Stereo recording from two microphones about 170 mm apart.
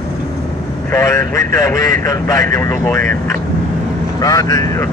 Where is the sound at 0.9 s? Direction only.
15° left (ahead or behind).